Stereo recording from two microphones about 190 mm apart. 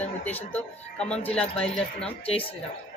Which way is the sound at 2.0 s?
30° left (ahead or behind).